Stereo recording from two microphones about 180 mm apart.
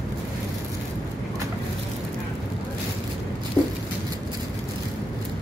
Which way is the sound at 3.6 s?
10° left (ahead or behind).